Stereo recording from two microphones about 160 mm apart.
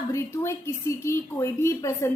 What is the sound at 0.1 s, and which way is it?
A woman's voice, 20° left (ahead or behind).